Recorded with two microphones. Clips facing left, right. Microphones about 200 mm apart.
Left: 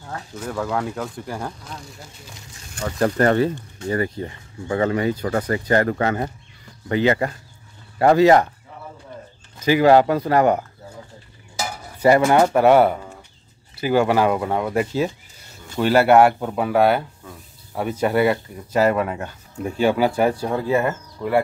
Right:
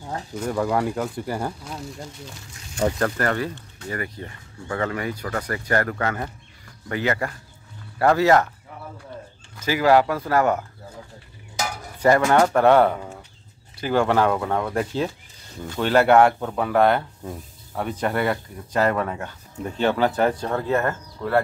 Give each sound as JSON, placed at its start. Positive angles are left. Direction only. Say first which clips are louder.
{"t": 0.0, "sound": "speech", "louder": "right 3 dB", "side_deg": -15}
{"t": 3.2, "sound": "speech", "louder": "left 7 dB", "side_deg": 25}
{"t": 9.6, "sound": "speech", "louder": "left 4 dB", "side_deg": 20}
{"t": 12.0, "sound": "speech", "louder": "left 2 dB", "side_deg": 15}